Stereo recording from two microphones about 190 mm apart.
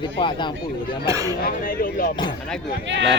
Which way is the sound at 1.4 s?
50° left (ahead or behind).